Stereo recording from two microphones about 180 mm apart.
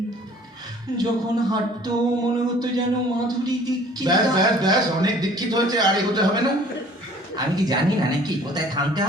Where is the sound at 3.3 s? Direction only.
20° right (ahead or behind).